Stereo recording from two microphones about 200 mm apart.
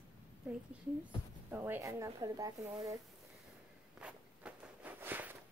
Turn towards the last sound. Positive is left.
turn(degrees=-10)  # may be behind; listen again after turning